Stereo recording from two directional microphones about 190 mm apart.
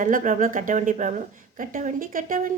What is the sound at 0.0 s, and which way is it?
A woman's voice, 45° right (ahead or behind).